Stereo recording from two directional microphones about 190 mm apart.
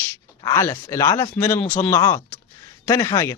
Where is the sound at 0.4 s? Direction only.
15° left (ahead or behind).